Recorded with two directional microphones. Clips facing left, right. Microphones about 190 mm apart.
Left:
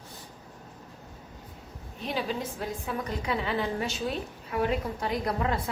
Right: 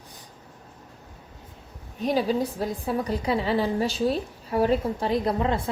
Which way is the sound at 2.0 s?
40° right (ahead or behind).